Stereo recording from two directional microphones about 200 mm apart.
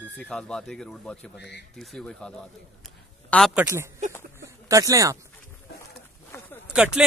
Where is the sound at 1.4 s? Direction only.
60° left (ahead or behind).